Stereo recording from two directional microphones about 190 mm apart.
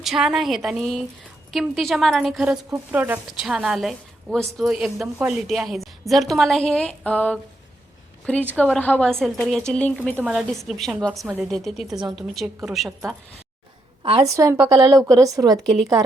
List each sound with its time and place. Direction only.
0.0 s a woman's voice: centre (ahead or behind)
14.0 s a woman's voice: 30° right (ahead or behind)
14.3 s a woman's voice: 15° right (ahead or behind)